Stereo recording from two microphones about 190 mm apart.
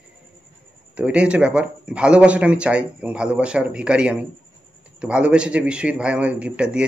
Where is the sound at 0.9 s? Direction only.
5° right (ahead or behind).